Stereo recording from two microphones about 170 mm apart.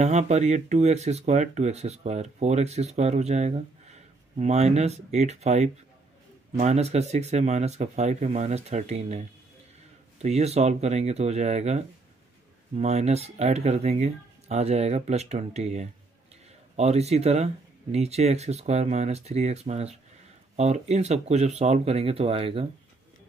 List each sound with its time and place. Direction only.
0.0 s speech: 40° right (ahead or behind)